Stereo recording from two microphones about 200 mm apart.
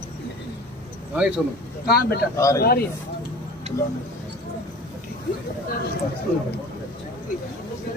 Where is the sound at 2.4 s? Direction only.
15° left (ahead or behind).